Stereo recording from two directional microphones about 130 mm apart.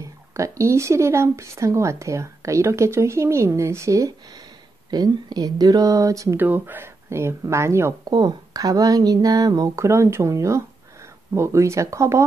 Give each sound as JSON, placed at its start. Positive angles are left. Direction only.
{"t": 0.0, "sound": "speech", "side_deg": -25}
{"t": 8.1, "sound": "speech", "side_deg": -30}